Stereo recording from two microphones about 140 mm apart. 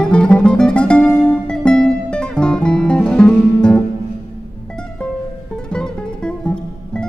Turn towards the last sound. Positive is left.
turn(degrees=5)  # may be behind; listen again after turning